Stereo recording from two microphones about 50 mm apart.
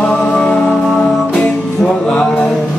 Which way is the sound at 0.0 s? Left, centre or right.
Left.